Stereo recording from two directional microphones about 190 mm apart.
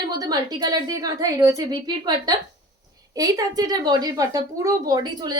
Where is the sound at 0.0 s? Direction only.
20° right (ahead or behind).